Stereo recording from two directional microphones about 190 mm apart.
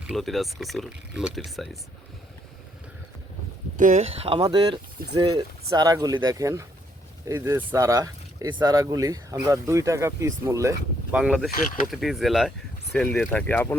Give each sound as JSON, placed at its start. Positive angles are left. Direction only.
{"t": 0.1, "sound": "speech", "side_deg": 0}
{"t": 3.8, "sound": "speech", "side_deg": -40}
{"t": 11.5, "sound": "speech", "side_deg": 45}
{"t": 11.9, "sound": "speech", "side_deg": 0}